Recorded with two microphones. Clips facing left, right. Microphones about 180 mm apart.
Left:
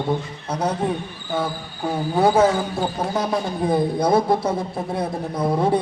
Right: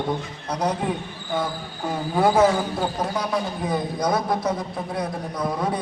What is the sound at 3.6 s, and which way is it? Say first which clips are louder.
A man's voice: left 7 dB; 30° left (ahead or behind).